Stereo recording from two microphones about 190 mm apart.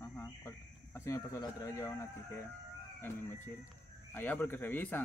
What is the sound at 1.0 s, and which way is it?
Speech, 15° left (ahead or behind).